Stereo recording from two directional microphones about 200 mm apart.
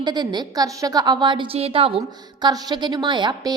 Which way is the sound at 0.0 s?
20° right (ahead or behind).